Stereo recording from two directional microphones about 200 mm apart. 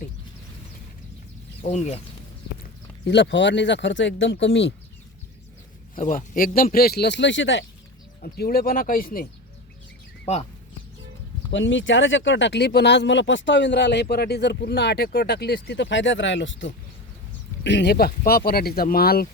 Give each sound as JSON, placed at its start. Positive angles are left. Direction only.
{"t": 1.6, "sound": "speech", "side_deg": 35}
{"t": 3.1, "sound": "speech", "side_deg": 60}
{"t": 6.0, "sound": "speech", "side_deg": 45}
{"t": 8.2, "sound": "speech", "side_deg": 50}
{"t": 10.3, "sound": "speech", "side_deg": 35}
{"t": 11.5, "sound": "speech", "side_deg": 65}